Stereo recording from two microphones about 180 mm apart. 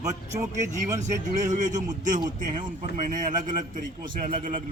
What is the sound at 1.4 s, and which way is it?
A man's voice, 40° right (ahead or behind).